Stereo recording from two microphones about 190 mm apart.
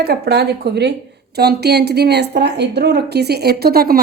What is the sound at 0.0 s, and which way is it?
A woman's voice, 60° right (ahead or behind).